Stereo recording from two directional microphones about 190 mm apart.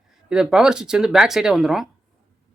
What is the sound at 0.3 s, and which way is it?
Speech, 5° right (ahead or behind).